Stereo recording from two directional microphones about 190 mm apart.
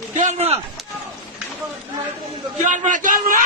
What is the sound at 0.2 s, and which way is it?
Speech, 35° right (ahead or behind).